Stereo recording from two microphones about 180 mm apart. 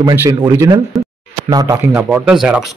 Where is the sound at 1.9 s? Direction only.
5° right (ahead or behind).